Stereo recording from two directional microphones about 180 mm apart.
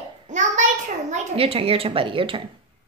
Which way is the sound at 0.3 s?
40° right (ahead or behind).